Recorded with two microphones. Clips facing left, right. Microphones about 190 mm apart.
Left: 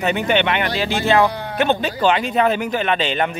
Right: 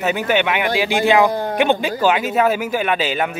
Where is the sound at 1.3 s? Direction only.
45° right (ahead or behind).